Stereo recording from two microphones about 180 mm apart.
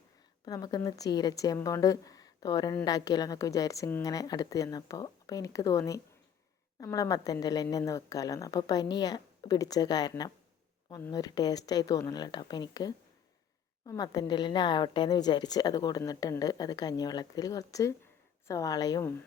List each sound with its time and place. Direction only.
0.4 s a woman's voice: 20° left (ahead or behind)